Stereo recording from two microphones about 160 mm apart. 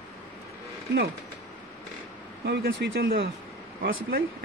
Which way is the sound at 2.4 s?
90° right.